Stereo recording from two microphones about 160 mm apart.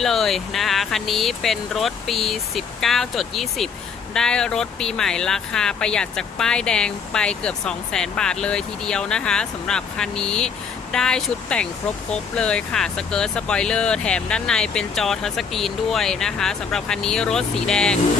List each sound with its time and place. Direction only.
0.0 s speech: centre (ahead or behind)